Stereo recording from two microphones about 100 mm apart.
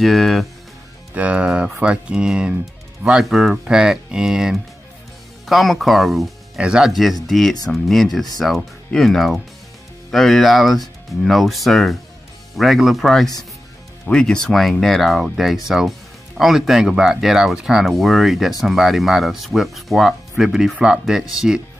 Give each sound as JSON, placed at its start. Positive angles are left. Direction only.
{"t": 0.0, "sound": "speech", "side_deg": 0}
{"t": 1.1, "sound": "speech", "side_deg": -15}